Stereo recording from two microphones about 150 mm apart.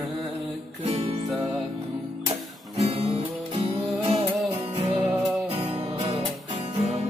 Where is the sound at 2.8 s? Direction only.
45° right (ahead or behind).